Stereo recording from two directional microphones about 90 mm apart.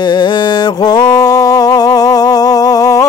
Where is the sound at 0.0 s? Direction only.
55° left (ahead or behind).